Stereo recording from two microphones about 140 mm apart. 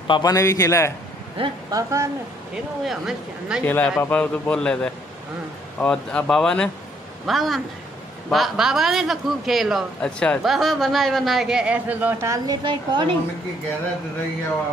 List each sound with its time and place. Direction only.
0.0 s a man's voice: 30° left (ahead or behind)
1.7 s speech: 25° right (ahead or behind)
2.8 s a man's voice: centre (ahead or behind)
3.6 s a man's voice: 15° left (ahead or behind); by 12.5 s 20° right (ahead or behind)
12.6 s a woman's voice: 35° right (ahead or behind)